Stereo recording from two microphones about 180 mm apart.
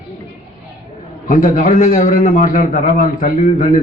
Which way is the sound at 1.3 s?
50° left (ahead or behind).